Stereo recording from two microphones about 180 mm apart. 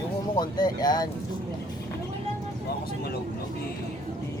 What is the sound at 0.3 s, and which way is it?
Speech, 25° left (ahead or behind).